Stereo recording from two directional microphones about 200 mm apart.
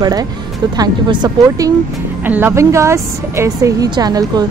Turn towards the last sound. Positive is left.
turn(degrees=-20)  # may be behind; listen again after turning